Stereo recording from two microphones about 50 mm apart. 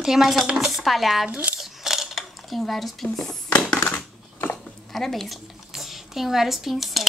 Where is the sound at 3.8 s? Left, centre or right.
Left.